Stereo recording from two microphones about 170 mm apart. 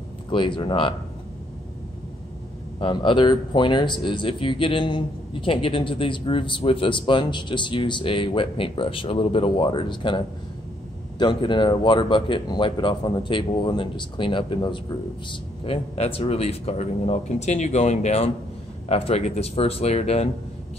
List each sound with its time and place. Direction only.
0.3 s speech: 30° left (ahead or behind)
2.8 s a man's voice: 30° left (ahead or behind)